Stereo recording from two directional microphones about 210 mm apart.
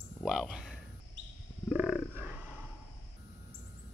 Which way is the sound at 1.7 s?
5° right (ahead or behind).